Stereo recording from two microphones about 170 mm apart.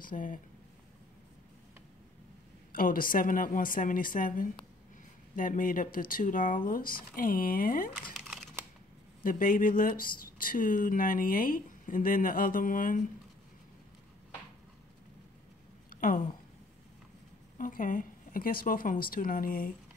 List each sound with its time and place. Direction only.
0.0 s speech: 50° left (ahead or behind)
2.7 s speech: 55° left (ahead or behind)
8.1 s crumpling: centre (ahead or behind)
9.2 s speech: 55° left (ahead or behind)
15.9 s a sound: 55° left (ahead or behind)
17.6 s speech: 50° left (ahead or behind)